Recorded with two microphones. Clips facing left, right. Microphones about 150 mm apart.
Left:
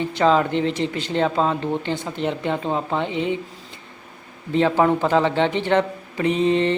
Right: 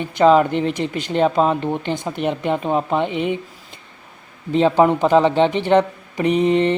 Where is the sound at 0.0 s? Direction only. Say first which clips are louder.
Right 4 dB; 15° right (ahead or behind).